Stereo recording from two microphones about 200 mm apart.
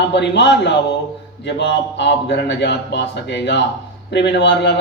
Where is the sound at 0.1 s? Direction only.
60° left (ahead or behind).